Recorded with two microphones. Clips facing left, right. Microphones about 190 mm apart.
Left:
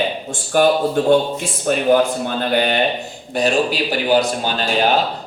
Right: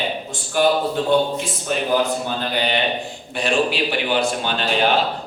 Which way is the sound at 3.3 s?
40° left (ahead or behind).